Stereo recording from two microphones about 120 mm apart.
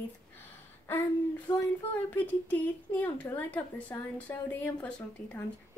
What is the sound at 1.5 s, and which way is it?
Speech, 40° left (ahead or behind).